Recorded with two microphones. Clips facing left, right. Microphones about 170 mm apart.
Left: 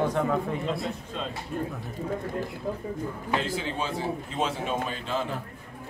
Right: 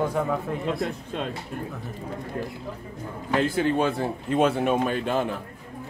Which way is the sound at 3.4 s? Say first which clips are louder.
Right 13 dB; 55° right (ahead or behind).